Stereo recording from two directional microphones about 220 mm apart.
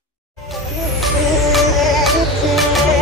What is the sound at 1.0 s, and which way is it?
Music, centre (ahead or behind).